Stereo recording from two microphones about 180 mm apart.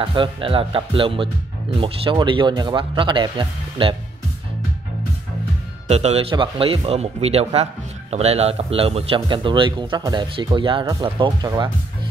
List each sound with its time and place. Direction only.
0.0 s speech: 30° right (ahead or behind)
5.9 s speech: 35° right (ahead or behind)